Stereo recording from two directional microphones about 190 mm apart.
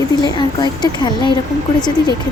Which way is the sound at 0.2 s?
25° left (ahead or behind).